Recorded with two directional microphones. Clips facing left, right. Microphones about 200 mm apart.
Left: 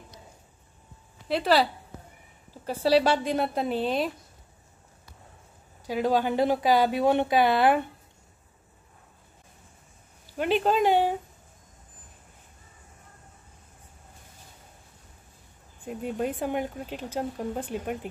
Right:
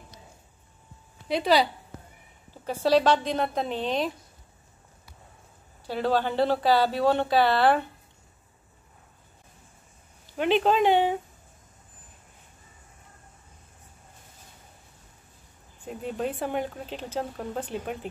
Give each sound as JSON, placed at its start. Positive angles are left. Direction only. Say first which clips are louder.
{"t": 1.3, "sound": "speech", "louder": "even", "side_deg": 5}
{"t": 5.9, "sound": "speech", "louder": "left 1 dB", "side_deg": 15}
{"t": 10.3, "sound": "speech", "louder": "right 1 dB", "side_deg": 5}
{"t": 16.2, "sound": "speech", "louder": "even", "side_deg": 10}